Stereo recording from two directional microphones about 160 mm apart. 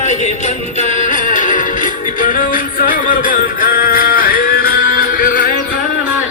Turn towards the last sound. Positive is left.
turn(degrees=60)  # may be behind; listen again after turning